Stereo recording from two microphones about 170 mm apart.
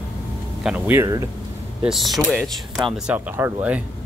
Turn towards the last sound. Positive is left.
turn(degrees=-10)  # may be behind; listen again after turning